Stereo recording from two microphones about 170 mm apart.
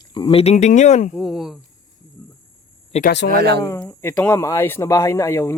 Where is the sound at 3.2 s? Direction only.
70° right (ahead or behind).